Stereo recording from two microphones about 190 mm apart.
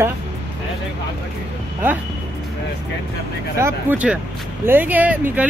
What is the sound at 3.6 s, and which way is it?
Speech, 10° right (ahead or behind).